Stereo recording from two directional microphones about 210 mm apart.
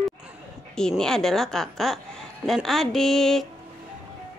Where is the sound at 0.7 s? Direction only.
5° left (ahead or behind).